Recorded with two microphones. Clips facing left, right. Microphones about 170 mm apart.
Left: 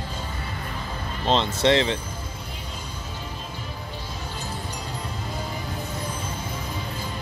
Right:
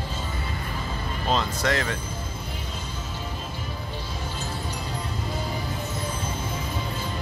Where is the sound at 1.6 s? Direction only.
25° left (ahead or behind).